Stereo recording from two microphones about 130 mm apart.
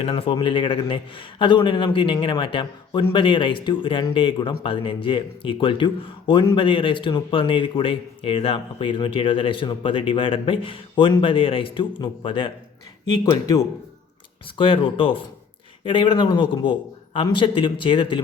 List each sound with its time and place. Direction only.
0.0 s speech: 45° left (ahead or behind)
14.6 s speech: 40° left (ahead or behind)